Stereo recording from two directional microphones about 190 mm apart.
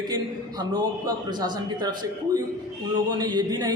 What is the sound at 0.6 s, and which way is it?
A man's voice, 20° right (ahead or behind).